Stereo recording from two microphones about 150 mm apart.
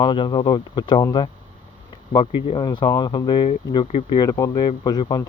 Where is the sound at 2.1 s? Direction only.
35° left (ahead or behind).